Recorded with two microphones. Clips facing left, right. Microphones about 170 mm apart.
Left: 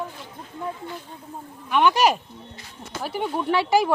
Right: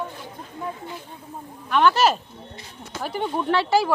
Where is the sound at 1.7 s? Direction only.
15° left (ahead or behind).